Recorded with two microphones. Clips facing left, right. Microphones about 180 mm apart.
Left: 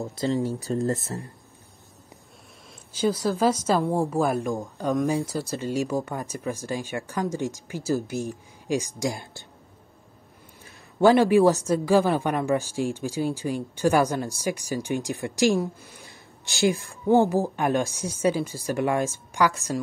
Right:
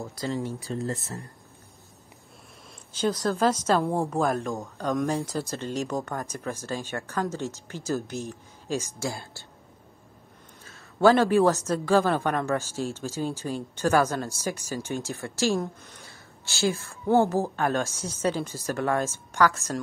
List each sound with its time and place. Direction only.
0.0 s speech: 25° left (ahead or behind)
0.4 s speech: 40° left (ahead or behind)
2.9 s a man's voice: 10° left (ahead or behind)
10.6 s a man's voice: 15° left (ahead or behind)